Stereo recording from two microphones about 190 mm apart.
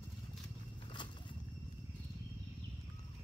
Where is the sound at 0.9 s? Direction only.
25° left (ahead or behind).